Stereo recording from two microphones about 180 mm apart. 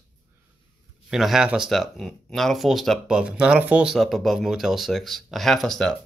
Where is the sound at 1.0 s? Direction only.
Centre (ahead or behind).